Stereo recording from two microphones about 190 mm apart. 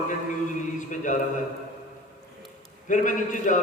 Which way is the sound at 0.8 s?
40° left (ahead or behind).